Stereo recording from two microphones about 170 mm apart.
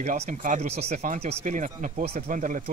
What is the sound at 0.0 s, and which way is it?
Speech, 50° right (ahead or behind).